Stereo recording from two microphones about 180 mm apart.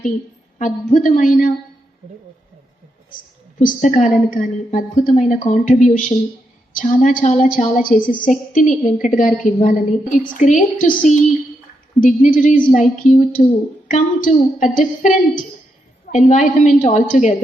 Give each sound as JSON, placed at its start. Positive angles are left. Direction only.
{"t": 0.6, "sound": "a woman's voice", "side_deg": 45}
{"t": 3.6, "sound": "a woman's voice", "side_deg": 45}
{"t": 11.9, "sound": "a woman's voice", "side_deg": 45}